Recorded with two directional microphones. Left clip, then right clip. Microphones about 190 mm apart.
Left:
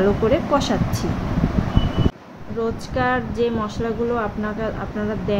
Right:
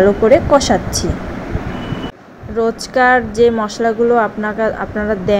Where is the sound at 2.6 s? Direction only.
40° right (ahead or behind).